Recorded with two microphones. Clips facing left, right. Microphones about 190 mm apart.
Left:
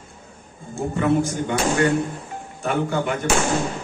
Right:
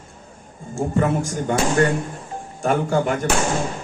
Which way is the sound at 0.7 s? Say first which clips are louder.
Even; 40° right (ahead or behind).